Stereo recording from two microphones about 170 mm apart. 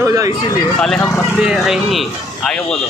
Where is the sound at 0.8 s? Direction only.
5° left (ahead or behind).